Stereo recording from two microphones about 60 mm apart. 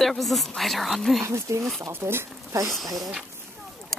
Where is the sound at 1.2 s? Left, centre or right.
Right.